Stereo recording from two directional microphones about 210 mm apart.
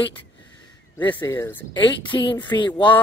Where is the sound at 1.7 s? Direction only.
25° left (ahead or behind).